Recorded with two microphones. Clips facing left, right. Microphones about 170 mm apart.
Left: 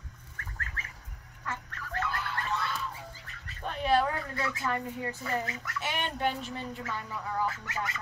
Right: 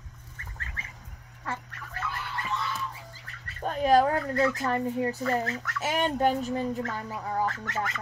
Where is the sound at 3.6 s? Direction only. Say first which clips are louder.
Right 5 dB; 40° right (ahead or behind).